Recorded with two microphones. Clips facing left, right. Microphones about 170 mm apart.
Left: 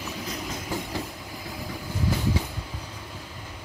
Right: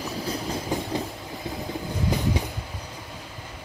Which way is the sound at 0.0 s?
35° right (ahead or behind).